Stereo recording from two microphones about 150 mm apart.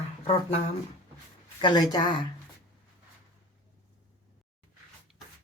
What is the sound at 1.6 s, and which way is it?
Speech, 30° left (ahead or behind).